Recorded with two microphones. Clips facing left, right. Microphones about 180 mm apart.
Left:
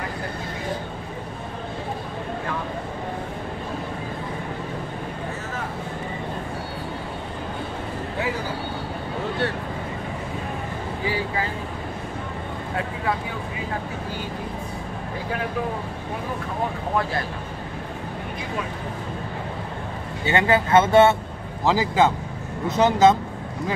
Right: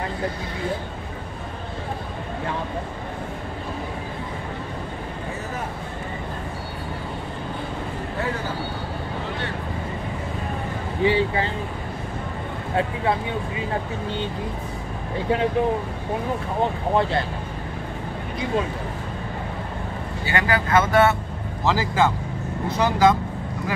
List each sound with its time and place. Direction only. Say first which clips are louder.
11.1 s vehicle: right 6 dB; 25° right (ahead or behind)
20.2 s speech: left 3 dB; 25° left (ahead or behind)